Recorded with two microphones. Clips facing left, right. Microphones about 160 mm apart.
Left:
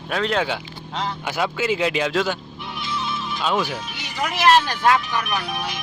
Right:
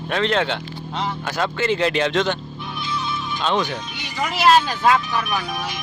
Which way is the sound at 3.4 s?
5° left (ahead or behind).